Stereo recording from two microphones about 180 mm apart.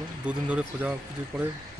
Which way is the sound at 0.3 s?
5° right (ahead or behind).